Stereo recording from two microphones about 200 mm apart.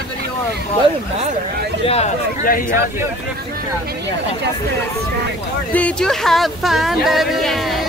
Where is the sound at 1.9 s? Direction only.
30° left (ahead or behind).